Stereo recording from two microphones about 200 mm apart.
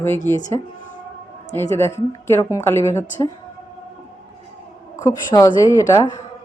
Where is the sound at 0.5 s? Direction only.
20° left (ahead or behind).